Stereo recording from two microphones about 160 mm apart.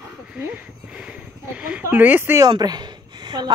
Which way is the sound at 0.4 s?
5° right (ahead or behind).